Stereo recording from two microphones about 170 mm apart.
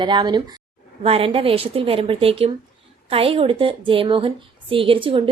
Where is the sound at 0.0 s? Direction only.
25° right (ahead or behind).